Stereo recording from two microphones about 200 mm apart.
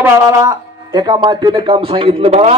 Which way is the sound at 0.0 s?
15° right (ahead or behind).